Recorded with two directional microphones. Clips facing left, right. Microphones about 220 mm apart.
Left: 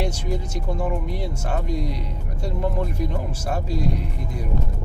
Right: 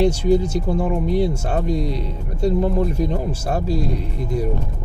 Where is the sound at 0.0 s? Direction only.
30° right (ahead or behind).